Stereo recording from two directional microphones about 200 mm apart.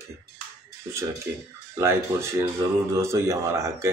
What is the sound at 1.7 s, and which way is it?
A man's voice, 15° right (ahead or behind).